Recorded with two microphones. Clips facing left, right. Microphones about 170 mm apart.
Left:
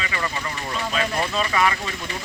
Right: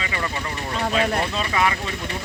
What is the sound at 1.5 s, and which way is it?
Speech, 20° right (ahead or behind).